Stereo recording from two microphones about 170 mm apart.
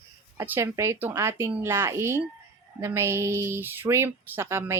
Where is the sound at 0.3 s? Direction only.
15° right (ahead or behind).